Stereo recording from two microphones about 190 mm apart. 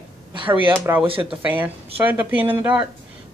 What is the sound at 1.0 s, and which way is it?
Speech, 30° right (ahead or behind).